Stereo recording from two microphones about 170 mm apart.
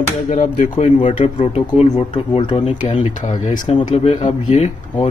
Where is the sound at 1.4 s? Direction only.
35° left (ahead or behind).